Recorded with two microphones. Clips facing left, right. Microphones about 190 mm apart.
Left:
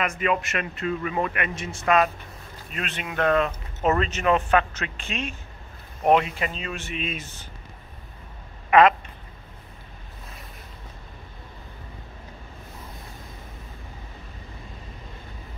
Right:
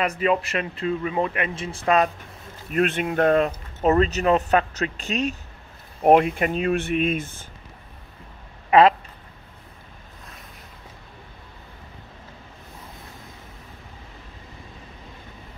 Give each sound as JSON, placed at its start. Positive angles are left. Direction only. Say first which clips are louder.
{"t": 0.2, "sound": "speech", "louder": "right 3 dB", "side_deg": -35}
{"t": 2.7, "sound": "speech", "louder": "right 11 dB", "side_deg": -50}
{"t": 6.0, "sound": "speech", "louder": "right 4 dB", "side_deg": -50}
{"t": 8.6, "sound": "a sound", "louder": "right 1 dB", "side_deg": -30}